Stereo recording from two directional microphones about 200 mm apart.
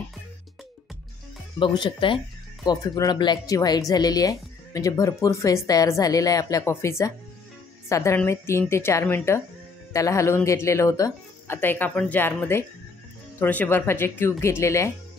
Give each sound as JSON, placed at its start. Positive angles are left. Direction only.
{"t": 1.6, "sound": "speech", "side_deg": 25}